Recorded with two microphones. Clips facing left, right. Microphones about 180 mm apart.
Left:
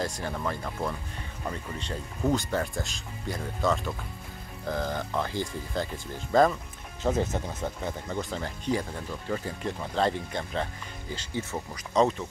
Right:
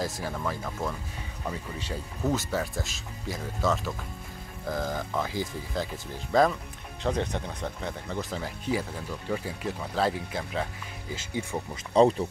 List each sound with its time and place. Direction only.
0.3 s speech: centre (ahead or behind)
11.7 s speech: 30° right (ahead or behind)